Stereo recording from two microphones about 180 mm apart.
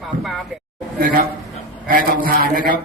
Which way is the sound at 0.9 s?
55° right (ahead or behind).